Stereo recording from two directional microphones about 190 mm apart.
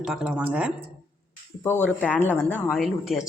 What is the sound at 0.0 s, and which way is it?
Speech, centre (ahead or behind).